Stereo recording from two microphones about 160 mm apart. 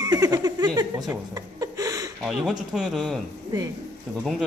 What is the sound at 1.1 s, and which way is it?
Chuckle, 25° right (ahead or behind).